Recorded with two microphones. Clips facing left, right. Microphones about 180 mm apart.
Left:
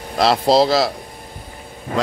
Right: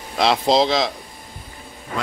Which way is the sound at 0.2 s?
5° left (ahead or behind).